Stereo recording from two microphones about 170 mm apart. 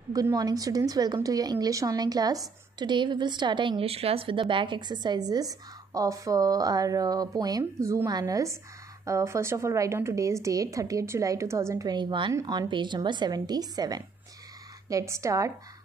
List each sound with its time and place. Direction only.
0.1 s a woman's voice: 20° right (ahead or behind)